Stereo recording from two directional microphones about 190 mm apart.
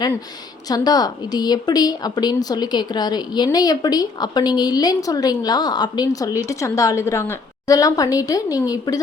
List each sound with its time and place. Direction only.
0.7 s a woman's voice: 20° left (ahead or behind)